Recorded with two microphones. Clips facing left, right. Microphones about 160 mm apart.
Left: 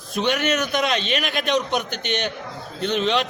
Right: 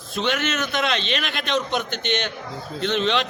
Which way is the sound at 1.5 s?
10° left (ahead or behind).